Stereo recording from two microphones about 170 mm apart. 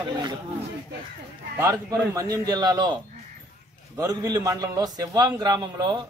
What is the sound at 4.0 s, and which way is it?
A man's voice, 20° right (ahead or behind).